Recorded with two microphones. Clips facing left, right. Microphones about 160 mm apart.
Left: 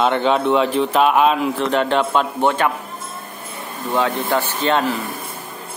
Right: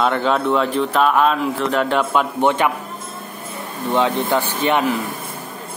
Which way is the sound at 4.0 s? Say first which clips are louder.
Right 1 dB; 15° right (ahead or behind).